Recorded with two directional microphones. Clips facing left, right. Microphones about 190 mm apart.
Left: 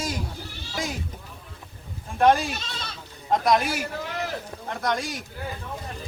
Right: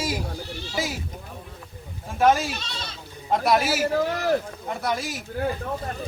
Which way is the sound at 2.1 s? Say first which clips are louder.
Even; centre (ahead or behind).